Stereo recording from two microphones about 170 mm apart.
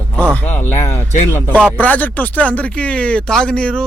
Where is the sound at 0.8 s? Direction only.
40° left (ahead or behind).